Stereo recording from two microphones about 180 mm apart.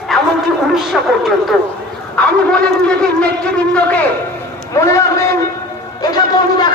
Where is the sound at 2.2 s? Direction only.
5° left (ahead or behind).